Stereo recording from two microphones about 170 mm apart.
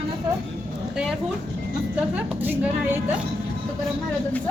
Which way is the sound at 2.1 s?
10° right (ahead or behind).